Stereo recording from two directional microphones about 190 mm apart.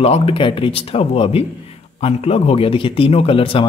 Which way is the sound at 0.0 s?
30° left (ahead or behind).